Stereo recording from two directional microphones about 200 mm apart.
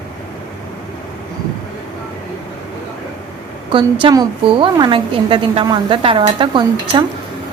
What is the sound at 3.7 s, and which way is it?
A woman's voice, 25° right (ahead or behind).